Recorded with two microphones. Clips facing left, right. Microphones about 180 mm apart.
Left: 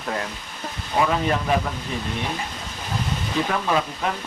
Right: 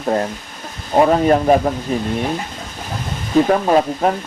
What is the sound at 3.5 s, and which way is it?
Speech, 45° right (ahead or behind).